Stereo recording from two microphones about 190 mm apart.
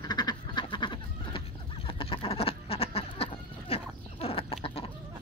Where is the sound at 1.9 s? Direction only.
30° left (ahead or behind).